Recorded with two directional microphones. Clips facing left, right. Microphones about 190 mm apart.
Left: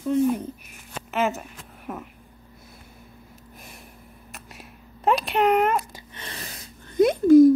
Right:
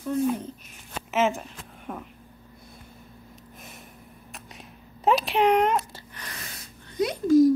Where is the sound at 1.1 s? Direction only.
Centre (ahead or behind).